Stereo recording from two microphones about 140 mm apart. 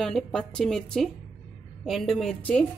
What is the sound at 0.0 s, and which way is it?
A woman's voice, 5° left (ahead or behind).